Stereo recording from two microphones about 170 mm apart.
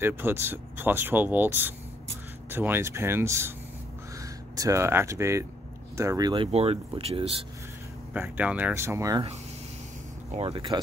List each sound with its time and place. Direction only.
0.0 s speech: 15° right (ahead or behind); by 7.3 s 35° right (ahead or behind)
8.1 s speech: 10° right (ahead or behind)
10.3 s speech: 35° right (ahead or behind)